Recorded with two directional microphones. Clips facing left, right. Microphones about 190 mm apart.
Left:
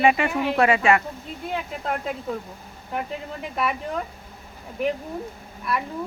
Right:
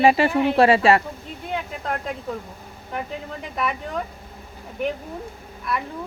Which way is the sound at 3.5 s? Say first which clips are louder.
Even; centre (ahead or behind).